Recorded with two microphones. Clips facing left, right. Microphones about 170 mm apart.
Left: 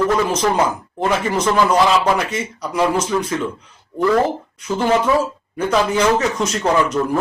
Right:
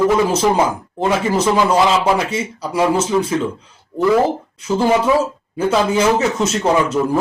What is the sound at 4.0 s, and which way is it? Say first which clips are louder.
Speech: right 2 dB; 10° right (ahead or behind).